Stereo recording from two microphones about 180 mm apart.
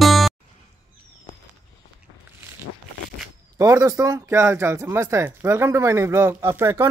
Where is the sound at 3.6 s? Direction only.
20° right (ahead or behind).